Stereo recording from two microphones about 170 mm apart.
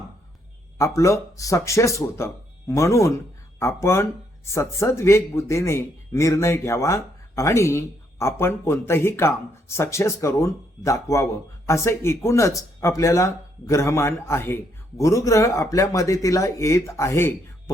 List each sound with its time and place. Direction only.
0.8 s speech: 15° left (ahead or behind)